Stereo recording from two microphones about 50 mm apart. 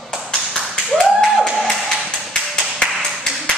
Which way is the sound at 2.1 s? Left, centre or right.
Centre.